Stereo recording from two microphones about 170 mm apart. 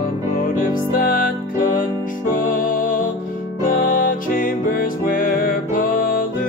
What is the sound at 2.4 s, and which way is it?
Music, 55° left (ahead or behind).